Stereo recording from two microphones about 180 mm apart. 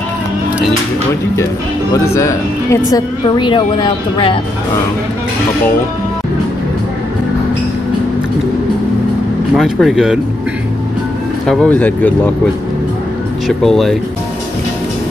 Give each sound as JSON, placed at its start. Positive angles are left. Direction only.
{"t": 1.3, "sound": "a woman's voice", "side_deg": 15}
{"t": 9.6, "sound": "speech", "side_deg": 0}
{"t": 11.4, "sound": "speech", "side_deg": 5}
{"t": 13.5, "sound": "speech", "side_deg": 0}